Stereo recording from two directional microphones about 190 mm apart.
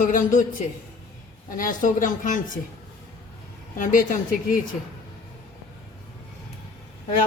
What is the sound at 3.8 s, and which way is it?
Speech, 45° left (ahead or behind).